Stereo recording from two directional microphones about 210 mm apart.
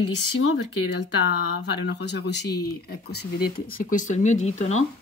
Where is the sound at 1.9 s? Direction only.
55° left (ahead or behind).